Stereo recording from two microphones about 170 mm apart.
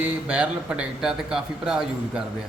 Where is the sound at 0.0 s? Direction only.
10° right (ahead or behind).